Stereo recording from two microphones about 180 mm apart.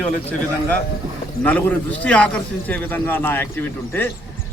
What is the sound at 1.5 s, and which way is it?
A man's voice, 10° left (ahead or behind).